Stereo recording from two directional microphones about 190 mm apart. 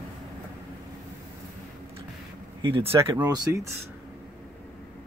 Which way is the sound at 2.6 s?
25° right (ahead or behind).